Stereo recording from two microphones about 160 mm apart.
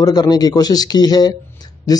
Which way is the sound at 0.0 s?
25° left (ahead or behind).